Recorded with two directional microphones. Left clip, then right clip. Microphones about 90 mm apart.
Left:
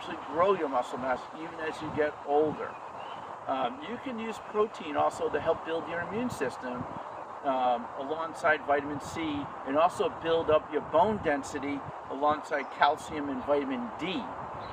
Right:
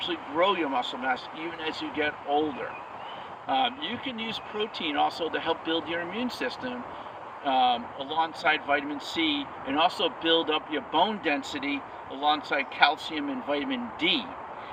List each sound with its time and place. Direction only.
0.0 s speech: 50° left (ahead or behind)
3.5 s speech: 50° left (ahead or behind)
7.4 s speech: 50° left (ahead or behind)